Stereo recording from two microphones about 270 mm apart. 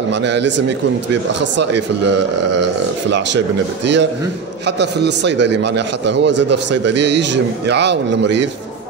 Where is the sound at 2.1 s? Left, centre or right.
Right.